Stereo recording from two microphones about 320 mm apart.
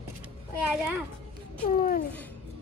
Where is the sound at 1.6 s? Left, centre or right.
Left.